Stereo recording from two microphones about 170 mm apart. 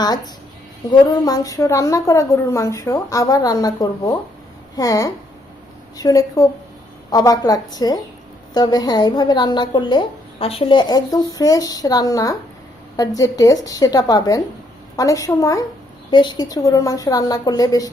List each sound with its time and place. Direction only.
0.9 s a woman's voice: 25° left (ahead or behind)